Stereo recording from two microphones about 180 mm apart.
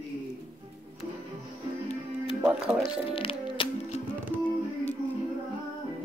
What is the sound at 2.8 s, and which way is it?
Music, 30° left (ahead or behind).